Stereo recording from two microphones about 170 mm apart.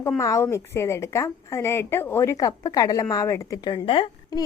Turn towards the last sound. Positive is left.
turn(degrees=30)  # may be behind; listen again after turning